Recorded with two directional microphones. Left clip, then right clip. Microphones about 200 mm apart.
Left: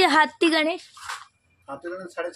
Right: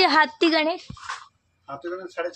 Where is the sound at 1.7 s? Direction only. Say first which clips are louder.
Right 1 dB; 35° left (ahead or behind).